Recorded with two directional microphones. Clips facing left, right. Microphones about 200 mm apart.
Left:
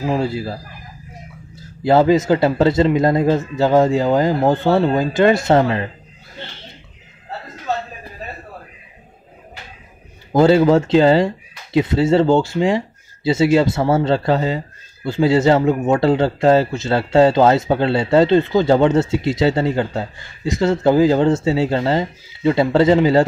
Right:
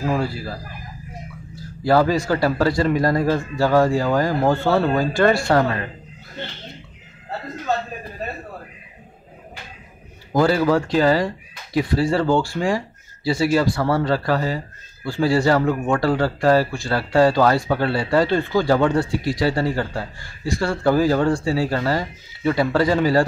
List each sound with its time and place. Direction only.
0.0 s speech: 20° left (ahead or behind)
1.9 s speech: 20° left (ahead or behind)
10.3 s speech: 25° left (ahead or behind)